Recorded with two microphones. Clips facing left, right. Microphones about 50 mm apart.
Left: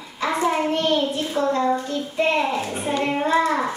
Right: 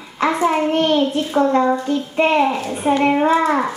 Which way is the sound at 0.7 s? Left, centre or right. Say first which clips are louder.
Right 5 dB; right.